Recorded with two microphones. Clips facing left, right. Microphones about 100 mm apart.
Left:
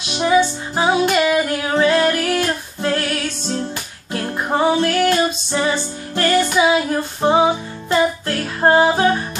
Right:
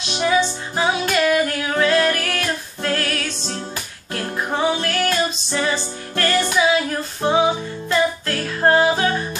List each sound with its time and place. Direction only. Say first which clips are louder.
0.7 s music: left 4 dB; 20° left (ahead or behind)
4.6 s music: left 5 dB; 25° left (ahead or behind)